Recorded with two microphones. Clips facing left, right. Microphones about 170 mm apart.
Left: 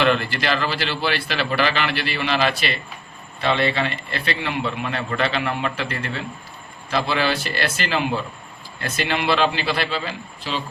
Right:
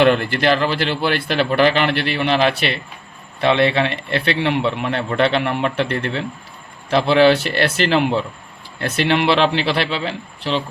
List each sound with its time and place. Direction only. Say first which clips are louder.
0.0 s a man's voice: right 5 dB; 55° right (ahead or behind)